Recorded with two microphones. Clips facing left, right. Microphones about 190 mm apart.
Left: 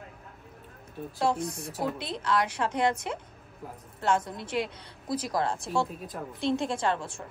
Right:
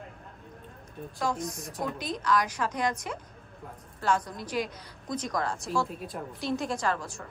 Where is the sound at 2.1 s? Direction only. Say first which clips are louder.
Right 1 dB; 30° left (ahead or behind).